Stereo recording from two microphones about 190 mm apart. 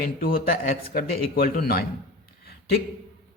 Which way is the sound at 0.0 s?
50° left (ahead or behind).